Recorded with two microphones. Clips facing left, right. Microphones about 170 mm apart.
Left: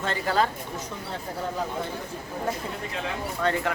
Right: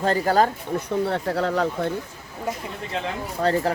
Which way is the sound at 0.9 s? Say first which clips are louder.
Right 11 dB; 65° right (ahead or behind).